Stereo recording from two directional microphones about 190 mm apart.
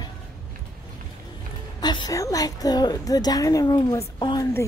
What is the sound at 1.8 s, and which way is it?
A woman's voice, 20° left (ahead or behind).